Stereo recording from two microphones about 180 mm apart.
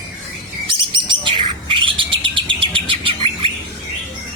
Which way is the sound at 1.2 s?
25° right (ahead or behind).